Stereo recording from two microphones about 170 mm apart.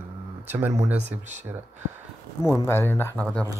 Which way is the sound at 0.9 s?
40° right (ahead or behind).